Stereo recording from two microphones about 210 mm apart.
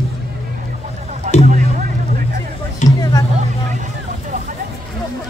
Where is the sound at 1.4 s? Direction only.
35° right (ahead or behind).